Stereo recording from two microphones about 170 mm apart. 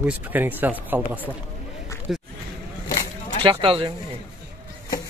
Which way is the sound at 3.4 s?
30° right (ahead or behind).